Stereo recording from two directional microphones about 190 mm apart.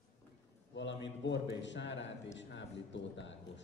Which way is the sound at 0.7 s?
70° left (ahead or behind).